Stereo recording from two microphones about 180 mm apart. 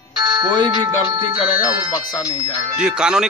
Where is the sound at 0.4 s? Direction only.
25° right (ahead or behind).